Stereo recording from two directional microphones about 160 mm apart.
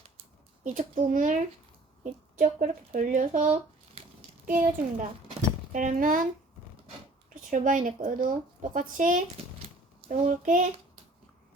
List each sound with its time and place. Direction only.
0.6 s a child's voice: 50° right (ahead or behind)
2.4 s a child's voice: 55° right (ahead or behind)
7.5 s speech: 55° right (ahead or behind)